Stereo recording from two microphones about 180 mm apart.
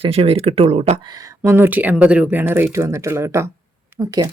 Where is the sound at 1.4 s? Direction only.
10° right (ahead or behind).